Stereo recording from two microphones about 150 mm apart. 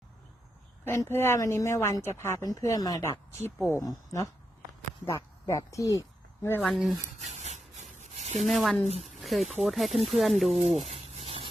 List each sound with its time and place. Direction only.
0.9 s speech: 15° left (ahead or behind)
6.6 s speech: centre (ahead or behind)
7.3 s rub: 50° right (ahead or behind)
8.4 s speech: centre (ahead or behind)
10.5 s a sound: 45° right (ahead or behind)